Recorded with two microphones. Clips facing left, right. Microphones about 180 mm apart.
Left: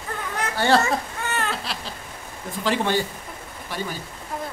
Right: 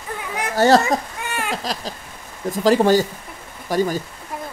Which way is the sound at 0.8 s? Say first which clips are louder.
Right 2 dB; 15° right (ahead or behind).